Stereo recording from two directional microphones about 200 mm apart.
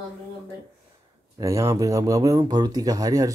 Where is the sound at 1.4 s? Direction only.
15° right (ahead or behind).